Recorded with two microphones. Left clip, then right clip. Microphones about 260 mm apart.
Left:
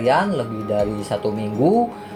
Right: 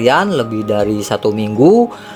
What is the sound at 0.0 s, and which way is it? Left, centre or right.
Speech, right.